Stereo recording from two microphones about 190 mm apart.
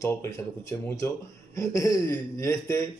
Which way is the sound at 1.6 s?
15° left (ahead or behind).